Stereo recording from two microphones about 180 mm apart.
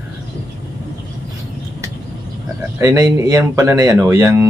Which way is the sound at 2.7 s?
15° right (ahead or behind).